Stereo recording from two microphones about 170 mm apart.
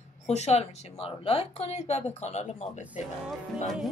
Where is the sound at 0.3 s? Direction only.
40° left (ahead or behind).